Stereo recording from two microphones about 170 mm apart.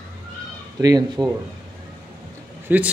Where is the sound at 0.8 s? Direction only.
25° right (ahead or behind).